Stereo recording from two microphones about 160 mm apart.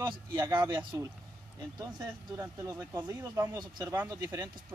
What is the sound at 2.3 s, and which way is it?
Speech, 15° right (ahead or behind).